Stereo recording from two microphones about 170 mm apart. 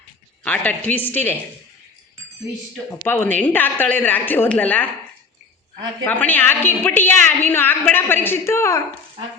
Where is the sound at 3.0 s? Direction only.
10° left (ahead or behind).